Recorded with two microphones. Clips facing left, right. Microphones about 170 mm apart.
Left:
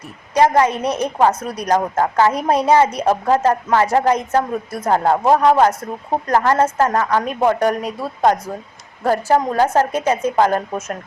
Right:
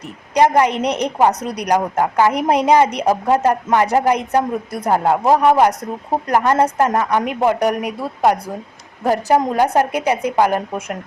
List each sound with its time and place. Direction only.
0.3 s a woman's voice: 15° right (ahead or behind)